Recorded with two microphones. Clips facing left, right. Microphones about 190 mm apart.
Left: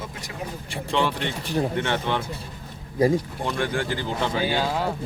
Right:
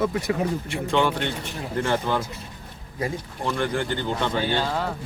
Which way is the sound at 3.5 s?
Centre (ahead or behind).